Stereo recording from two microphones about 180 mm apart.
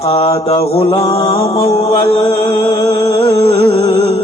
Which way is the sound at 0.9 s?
25° left (ahead or behind).